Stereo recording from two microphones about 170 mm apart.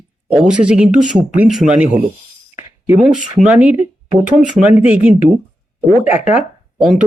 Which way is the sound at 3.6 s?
40° left (ahead or behind).